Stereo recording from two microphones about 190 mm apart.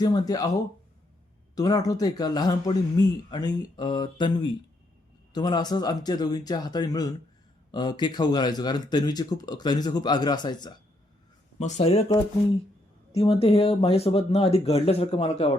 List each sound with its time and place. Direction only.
0.0 s speech: 20° left (ahead or behind)
1.5 s speech: 20° left (ahead or behind)
11.6 s speech: 35° left (ahead or behind)